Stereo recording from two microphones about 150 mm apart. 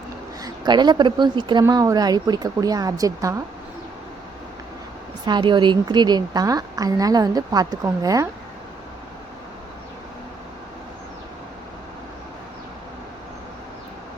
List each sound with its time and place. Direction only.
0.4 s a woman's voice: 30° right (ahead or behind)
5.2 s a woman's voice: 30° right (ahead or behind)